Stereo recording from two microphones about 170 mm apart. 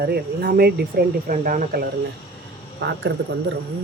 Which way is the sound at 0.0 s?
65° right (ahead or behind).